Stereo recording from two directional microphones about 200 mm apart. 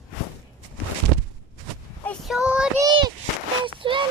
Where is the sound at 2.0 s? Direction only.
5° left (ahead or behind).